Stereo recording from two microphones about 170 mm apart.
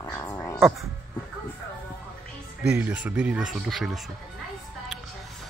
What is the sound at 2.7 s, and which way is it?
Speech, 10° right (ahead or behind).